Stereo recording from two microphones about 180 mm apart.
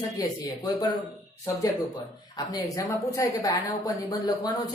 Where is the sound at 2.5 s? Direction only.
20° left (ahead or behind).